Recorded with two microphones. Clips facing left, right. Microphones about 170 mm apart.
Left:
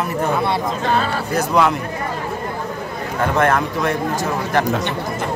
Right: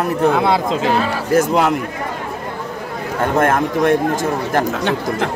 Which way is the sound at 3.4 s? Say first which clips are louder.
Right 3 dB; 45° right (ahead or behind).